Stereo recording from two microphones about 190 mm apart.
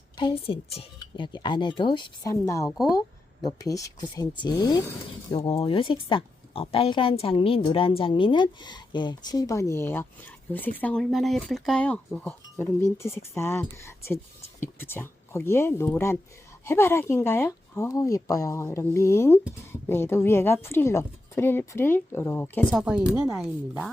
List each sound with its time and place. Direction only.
0.2 s a woman's voice: 25° left (ahead or behind)
22.7 s speech: 5° right (ahead or behind)